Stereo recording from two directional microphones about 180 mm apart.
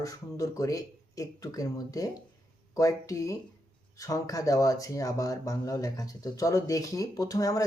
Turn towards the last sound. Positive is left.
turn(degrees=20)  # may be behind; listen again after turning